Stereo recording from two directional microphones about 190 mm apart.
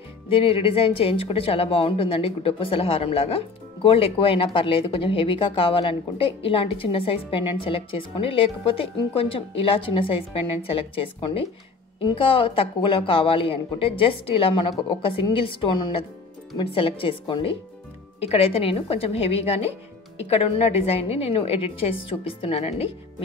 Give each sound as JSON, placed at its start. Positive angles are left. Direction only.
{"t": 0.3, "sound": "a woman's voice", "side_deg": 30}